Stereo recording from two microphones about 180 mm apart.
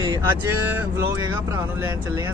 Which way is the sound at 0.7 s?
10° right (ahead or behind).